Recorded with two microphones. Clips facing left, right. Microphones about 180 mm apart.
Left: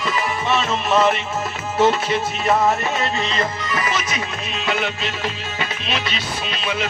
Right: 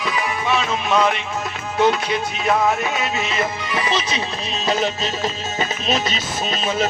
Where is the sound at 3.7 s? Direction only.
25° right (ahead or behind).